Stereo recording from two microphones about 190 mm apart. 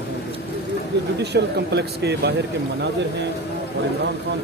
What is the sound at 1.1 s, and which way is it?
Speech, 60° right (ahead or behind).